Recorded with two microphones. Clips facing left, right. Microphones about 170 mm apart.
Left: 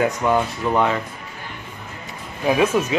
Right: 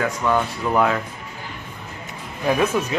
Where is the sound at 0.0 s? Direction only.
20° left (ahead or behind).